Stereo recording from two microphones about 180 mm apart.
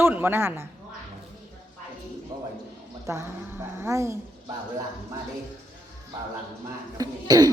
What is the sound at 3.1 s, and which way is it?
A woman's voice, 15° right (ahead or behind).